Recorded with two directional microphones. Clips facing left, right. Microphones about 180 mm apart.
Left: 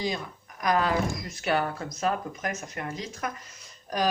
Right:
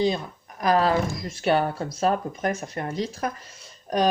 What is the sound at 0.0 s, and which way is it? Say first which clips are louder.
Speech: right 7 dB; 30° right (ahead or behind).